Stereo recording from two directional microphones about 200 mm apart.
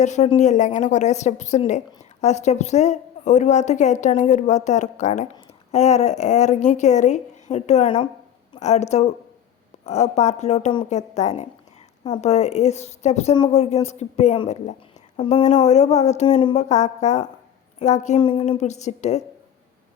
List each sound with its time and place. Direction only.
0.0 s a woman's voice: 35° left (ahead or behind)
18.2 s a woman's voice: 25° left (ahead or behind)
18.4 s a woman's voice: 35° left (ahead or behind)